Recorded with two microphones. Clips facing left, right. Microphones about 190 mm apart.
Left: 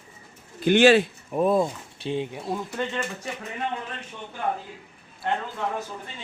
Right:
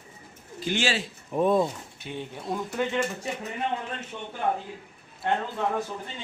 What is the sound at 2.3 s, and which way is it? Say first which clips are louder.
Speech: even; centre (ahead or behind).